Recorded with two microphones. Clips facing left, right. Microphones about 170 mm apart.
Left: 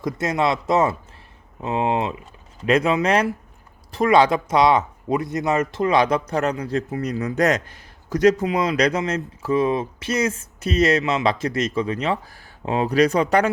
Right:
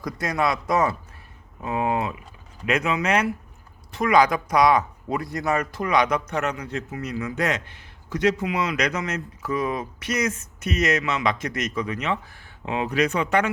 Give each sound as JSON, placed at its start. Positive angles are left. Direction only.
{"t": 0.0, "sound": "speech", "side_deg": 25}